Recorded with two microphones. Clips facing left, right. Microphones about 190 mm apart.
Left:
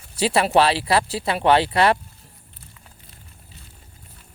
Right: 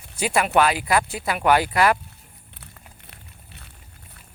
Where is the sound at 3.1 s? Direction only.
65° right (ahead or behind).